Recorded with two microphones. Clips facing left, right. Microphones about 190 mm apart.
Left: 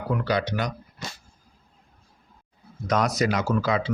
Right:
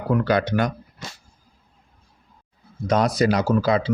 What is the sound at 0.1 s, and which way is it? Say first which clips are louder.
Speech: right 5 dB; 50° right (ahead or behind).